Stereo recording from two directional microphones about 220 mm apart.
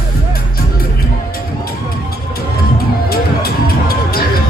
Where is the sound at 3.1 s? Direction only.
45° left (ahead or behind).